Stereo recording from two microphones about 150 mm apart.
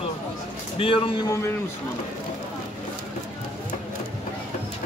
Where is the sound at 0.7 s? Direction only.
35° left (ahead or behind).